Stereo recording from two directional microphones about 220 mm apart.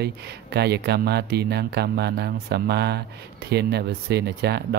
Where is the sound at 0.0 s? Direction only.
50° right (ahead or behind).